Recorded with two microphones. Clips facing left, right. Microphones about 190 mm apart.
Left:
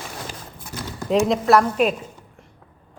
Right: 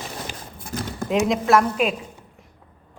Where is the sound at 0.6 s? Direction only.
55° right (ahead or behind).